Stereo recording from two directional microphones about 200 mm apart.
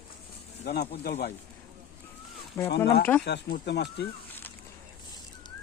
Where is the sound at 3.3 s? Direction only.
55° left (ahead or behind).